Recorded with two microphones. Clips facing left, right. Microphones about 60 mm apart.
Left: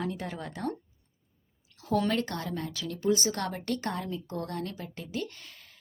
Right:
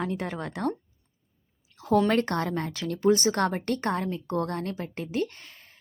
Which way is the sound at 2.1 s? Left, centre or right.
Right.